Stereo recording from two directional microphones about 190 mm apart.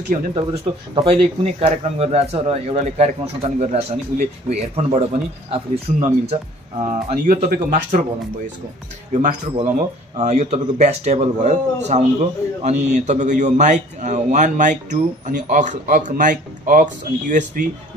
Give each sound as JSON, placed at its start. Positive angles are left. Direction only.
{"t": 0.1, "sound": "speech", "side_deg": -40}
{"t": 0.9, "sound": "speech", "side_deg": -30}
{"t": 9.1, "sound": "speech", "side_deg": -40}